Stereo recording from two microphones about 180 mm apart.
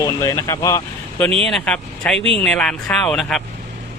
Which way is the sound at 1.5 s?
5° left (ahead or behind).